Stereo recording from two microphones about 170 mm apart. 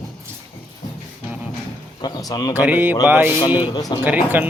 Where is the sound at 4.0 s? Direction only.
10° right (ahead or behind).